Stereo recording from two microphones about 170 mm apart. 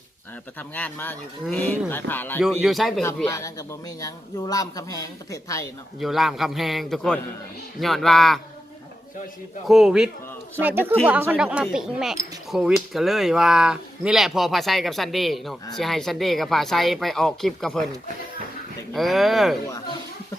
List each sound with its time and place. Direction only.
0.7 s speech: 10° left (ahead or behind)
2.4 s speech: centre (ahead or behind)
3.2 s a man's voice: 20° left (ahead or behind)
6.0 s speech: centre (ahead or behind)
9.6 s speech: centre (ahead or behind)
18.9 s speech: centre (ahead or behind)